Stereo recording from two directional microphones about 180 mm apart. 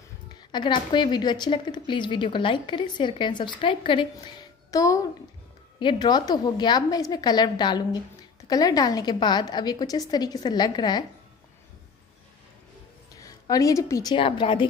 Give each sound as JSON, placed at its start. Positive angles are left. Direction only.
{"t": 0.5, "sound": "a woman's voice", "side_deg": 25}
{"t": 13.1, "sound": "a woman's voice", "side_deg": 20}